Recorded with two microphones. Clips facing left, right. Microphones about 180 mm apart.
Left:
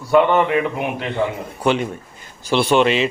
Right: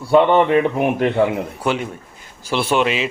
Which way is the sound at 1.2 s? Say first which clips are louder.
Right 1 dB; 5° right (ahead or behind).